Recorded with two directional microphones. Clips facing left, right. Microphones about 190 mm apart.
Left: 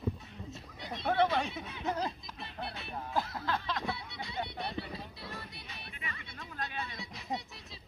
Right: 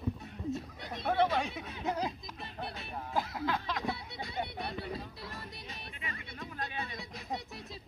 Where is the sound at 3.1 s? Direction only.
15° right (ahead or behind).